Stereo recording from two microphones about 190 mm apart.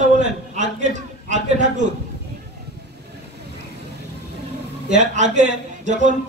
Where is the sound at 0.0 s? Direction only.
40° right (ahead or behind).